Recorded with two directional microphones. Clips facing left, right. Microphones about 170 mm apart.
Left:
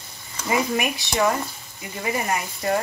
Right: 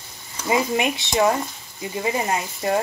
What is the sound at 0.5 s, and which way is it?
Speech, 25° right (ahead or behind).